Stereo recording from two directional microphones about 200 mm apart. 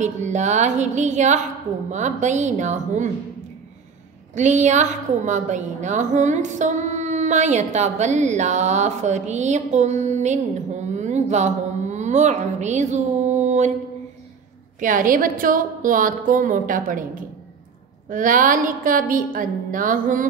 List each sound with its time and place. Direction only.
0.0 s a woman's voice: 35° right (ahead or behind)
4.4 s a woman's voice: 35° right (ahead or behind)
14.8 s a woman's voice: 40° right (ahead or behind)